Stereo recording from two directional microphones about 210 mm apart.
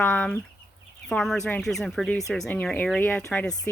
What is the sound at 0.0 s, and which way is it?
Chicken, 5° left (ahead or behind).